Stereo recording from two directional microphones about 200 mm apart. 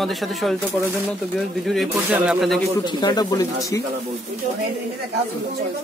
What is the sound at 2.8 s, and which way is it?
Speech, 20° left (ahead or behind).